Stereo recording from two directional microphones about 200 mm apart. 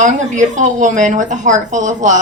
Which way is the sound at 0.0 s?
40° right (ahead or behind).